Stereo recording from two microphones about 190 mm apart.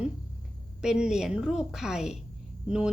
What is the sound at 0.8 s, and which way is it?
A woman's voice, 5° right (ahead or behind).